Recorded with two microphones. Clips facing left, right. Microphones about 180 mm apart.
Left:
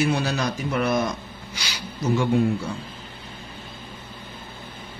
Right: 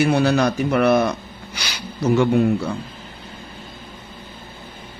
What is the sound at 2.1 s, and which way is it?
Speech, 65° right (ahead or behind).